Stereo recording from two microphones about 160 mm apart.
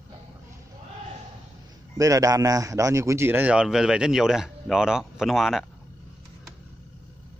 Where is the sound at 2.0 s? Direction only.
20° right (ahead or behind); by 5.7 s centre (ahead or behind).